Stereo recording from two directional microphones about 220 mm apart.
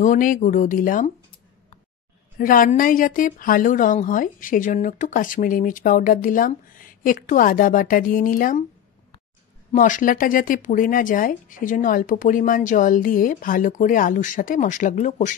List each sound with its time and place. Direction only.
0.0 s a woman's voice: 35° left (ahead or behind)
2.3 s a woman's voice: 40° left (ahead or behind)
9.7 s a woman's voice: 35° left (ahead or behind)